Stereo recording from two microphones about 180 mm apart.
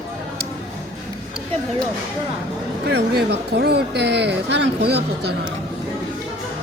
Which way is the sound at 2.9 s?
65° right (ahead or behind).